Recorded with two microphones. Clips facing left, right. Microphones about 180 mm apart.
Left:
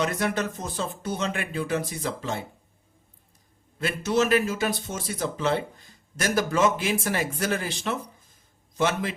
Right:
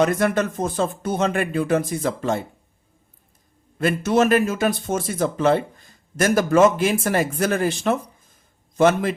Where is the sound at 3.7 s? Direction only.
55° right (ahead or behind).